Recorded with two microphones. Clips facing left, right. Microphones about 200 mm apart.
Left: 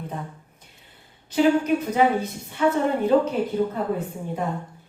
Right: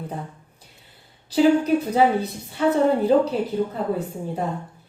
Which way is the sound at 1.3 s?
35° right (ahead or behind).